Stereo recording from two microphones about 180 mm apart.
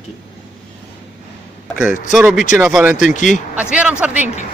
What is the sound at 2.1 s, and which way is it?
A man's voice, centre (ahead or behind).